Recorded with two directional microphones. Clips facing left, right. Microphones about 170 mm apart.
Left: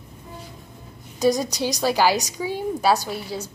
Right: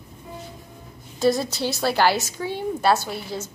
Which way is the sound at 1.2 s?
15° left (ahead or behind).